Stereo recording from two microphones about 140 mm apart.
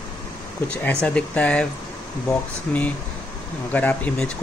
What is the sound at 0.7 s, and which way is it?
Speech, 5° left (ahead or behind).